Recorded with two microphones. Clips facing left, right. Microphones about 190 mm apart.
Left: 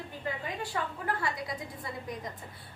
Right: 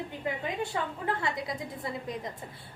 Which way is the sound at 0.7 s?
25° right (ahead or behind).